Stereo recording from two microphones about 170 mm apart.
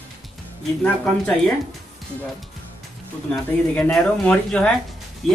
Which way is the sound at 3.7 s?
5° left (ahead or behind).